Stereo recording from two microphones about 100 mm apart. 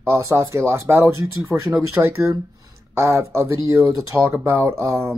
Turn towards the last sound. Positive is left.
turn(degrees=-25)  # may be behind; listen again after turning